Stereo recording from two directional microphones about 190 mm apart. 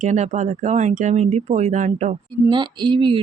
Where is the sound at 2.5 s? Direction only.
25° right (ahead or behind).